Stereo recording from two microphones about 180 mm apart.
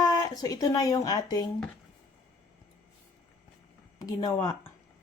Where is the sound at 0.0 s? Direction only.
20° left (ahead or behind).